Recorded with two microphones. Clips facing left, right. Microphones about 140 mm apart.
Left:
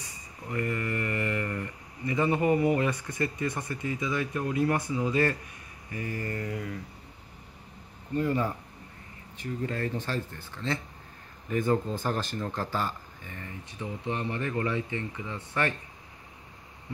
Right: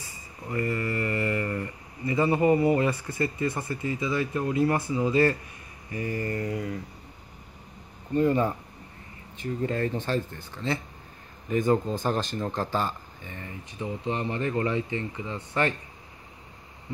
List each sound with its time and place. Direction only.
0.5 s mantra: 5° right (ahead or behind)
2.8 s speech: 10° right (ahead or behind)
8.2 s speech: 25° right (ahead or behind)